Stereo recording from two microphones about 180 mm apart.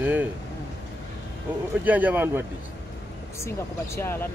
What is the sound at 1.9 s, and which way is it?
Speech, 10° right (ahead or behind).